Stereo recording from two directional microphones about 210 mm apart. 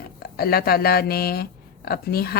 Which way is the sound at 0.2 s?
45° left (ahead or behind).